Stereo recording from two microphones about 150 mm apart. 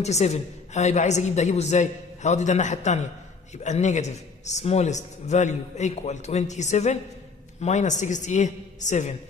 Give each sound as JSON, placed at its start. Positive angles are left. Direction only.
{"t": 0.0, "sound": "a man's voice", "side_deg": 45}